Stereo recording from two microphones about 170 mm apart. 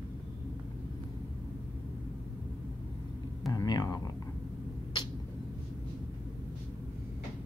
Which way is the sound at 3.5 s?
20° left (ahead or behind).